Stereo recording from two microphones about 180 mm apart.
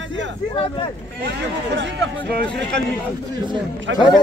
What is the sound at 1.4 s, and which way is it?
Speech, 90° right.